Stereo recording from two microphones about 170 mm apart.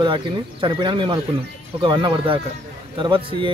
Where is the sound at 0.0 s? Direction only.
30° right (ahead or behind).